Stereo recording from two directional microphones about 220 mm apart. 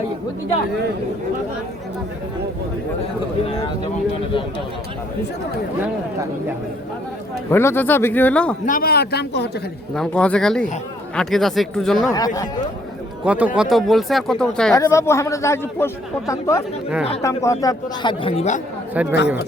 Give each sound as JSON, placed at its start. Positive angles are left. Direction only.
{"t": 7.5, "sound": "speech", "side_deg": 10}
{"t": 8.6, "sound": "speech", "side_deg": 40}
{"t": 9.9, "sound": "speech", "side_deg": 5}
{"t": 12.1, "sound": "speech", "side_deg": 15}
{"t": 13.2, "sound": "speech", "side_deg": -5}
{"t": 19.0, "sound": "speech", "side_deg": -5}